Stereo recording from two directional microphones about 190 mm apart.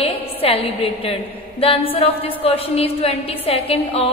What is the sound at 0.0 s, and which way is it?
A woman's voice, 30° left (ahead or behind).